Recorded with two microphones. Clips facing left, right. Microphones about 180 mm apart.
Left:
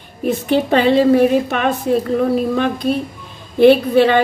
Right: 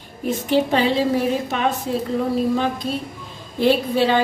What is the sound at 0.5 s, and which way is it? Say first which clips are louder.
A woman's voice: left 4 dB; 60° left (ahead or behind).